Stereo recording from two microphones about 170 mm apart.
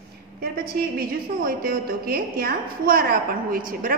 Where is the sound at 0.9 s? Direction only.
60° right (ahead or behind).